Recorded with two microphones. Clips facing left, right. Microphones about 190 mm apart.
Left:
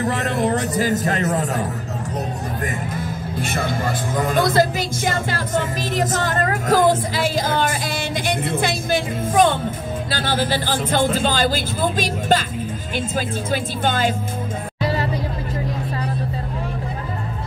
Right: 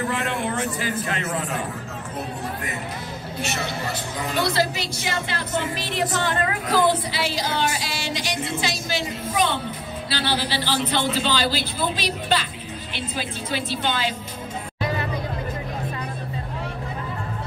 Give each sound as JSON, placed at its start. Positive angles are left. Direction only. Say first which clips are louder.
{"t": 0.0, "sound": "a man's voice", "louder": "left 5 dB", "side_deg": 40}
{"t": 3.3, "sound": "a woman's voice", "louder": "left 4 dB", "side_deg": 50}